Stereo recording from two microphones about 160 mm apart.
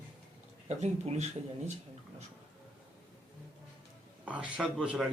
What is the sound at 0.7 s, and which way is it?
Speech, 45° right (ahead or behind).